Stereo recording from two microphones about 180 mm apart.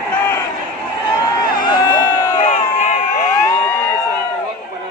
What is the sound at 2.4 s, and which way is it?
Crowd, 45° left (ahead or behind).